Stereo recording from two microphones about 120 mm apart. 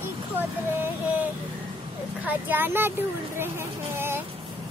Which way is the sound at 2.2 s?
15° right (ahead or behind).